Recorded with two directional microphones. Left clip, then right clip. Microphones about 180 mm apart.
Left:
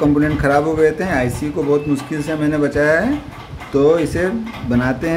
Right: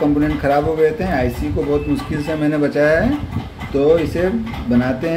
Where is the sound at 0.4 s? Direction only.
20° left (ahead or behind).